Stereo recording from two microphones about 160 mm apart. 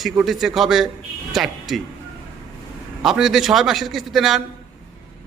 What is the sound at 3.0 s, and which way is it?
A man's voice, 5° right (ahead or behind).